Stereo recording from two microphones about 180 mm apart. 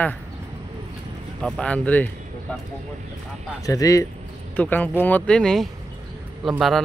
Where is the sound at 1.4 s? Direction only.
5° left (ahead or behind).